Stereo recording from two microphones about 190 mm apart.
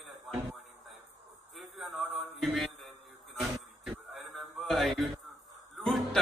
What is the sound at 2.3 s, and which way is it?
Mantra, centre (ahead or behind).